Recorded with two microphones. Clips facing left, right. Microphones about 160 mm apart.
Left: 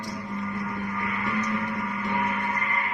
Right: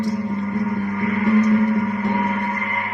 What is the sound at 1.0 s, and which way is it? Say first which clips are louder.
Music: right 14 dB; 45° right (ahead or behind).